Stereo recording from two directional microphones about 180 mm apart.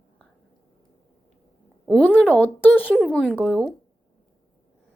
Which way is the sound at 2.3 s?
5° left (ahead or behind).